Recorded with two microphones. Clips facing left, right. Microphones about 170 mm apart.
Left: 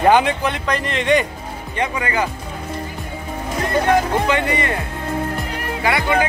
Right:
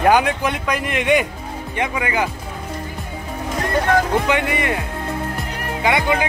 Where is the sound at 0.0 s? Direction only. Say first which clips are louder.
Left 1 dB; centre (ahead or behind).